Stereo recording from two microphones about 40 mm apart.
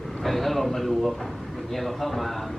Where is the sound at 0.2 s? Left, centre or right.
Centre.